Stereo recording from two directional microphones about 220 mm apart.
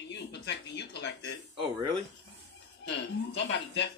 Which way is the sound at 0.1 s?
50° left (ahead or behind).